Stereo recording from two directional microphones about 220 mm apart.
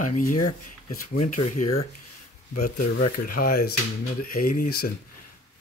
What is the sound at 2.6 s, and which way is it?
Speech, 40° left (ahead or behind).